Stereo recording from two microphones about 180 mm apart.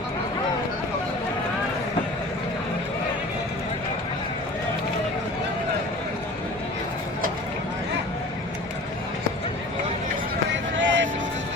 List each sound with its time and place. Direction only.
10.5 s music: 90° right